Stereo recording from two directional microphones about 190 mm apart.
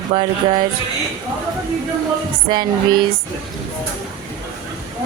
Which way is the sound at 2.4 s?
25° right (ahead or behind).